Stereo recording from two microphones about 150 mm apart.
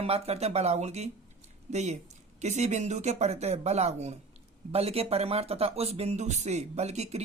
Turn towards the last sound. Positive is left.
turn(degrees=-45)  # may be behind; listen again after turning